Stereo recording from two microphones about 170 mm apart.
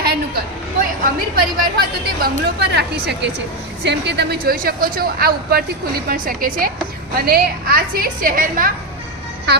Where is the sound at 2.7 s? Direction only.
75° right (ahead or behind); by 8.7 s 55° right (ahead or behind).